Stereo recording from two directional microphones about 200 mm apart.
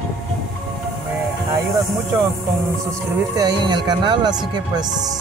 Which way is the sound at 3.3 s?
20° right (ahead or behind).